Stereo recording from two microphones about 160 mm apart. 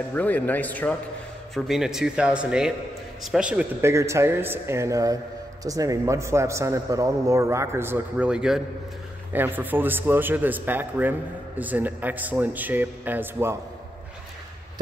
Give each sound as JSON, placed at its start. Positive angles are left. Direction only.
{"t": 0.1, "sound": "speech", "side_deg": 10}
{"t": 1.5, "sound": "speech", "side_deg": 0}
{"t": 3.9, "sound": "speech", "side_deg": -20}